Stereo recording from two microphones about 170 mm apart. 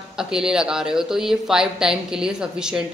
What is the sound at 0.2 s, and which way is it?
A woman's voice, 5° right (ahead or behind).